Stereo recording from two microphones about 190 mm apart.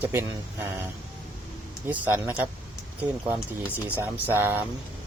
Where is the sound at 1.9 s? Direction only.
10° right (ahead or behind).